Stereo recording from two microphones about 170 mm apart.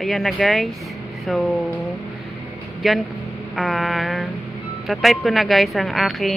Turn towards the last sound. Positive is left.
turn(degrees=0)  # may be behind; listen again after turning